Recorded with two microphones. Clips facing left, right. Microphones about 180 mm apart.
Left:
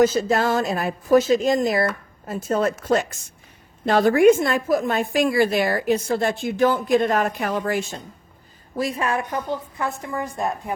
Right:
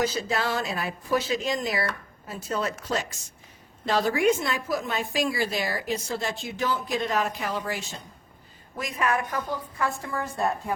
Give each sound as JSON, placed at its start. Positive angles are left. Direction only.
{"t": 0.0, "sound": "a woman's voice", "side_deg": 50}
{"t": 8.8, "sound": "a woman's voice", "side_deg": 30}